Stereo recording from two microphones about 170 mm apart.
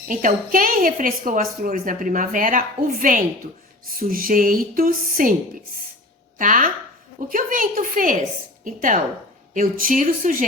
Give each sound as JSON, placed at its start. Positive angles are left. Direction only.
{"t": 0.1, "sound": "a woman's voice", "side_deg": -50}
{"t": 6.4, "sound": "a woman's voice", "side_deg": -50}